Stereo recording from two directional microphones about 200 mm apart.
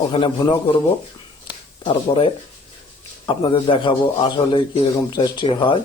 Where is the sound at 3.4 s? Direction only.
25° left (ahead or behind).